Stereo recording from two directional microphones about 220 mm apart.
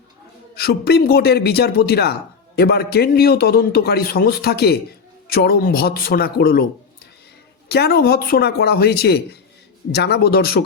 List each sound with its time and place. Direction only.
0.5 s a man's voice: 45° left (ahead or behind)
7.7 s a man's voice: 45° left (ahead or behind)